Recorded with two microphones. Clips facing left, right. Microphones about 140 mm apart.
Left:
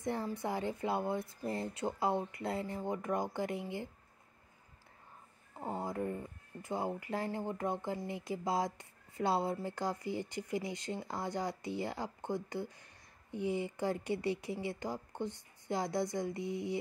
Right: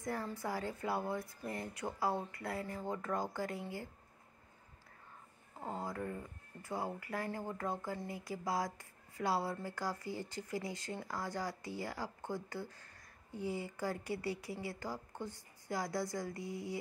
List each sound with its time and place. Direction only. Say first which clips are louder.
0.0 s speech: left 3 dB; 25° left (ahead or behind)
5.6 s speech: left 4 dB; 20° left (ahead or behind)